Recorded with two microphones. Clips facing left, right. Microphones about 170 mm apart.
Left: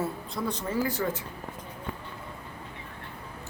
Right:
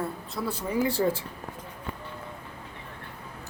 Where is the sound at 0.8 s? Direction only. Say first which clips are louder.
Right 4 dB; 30° right (ahead or behind).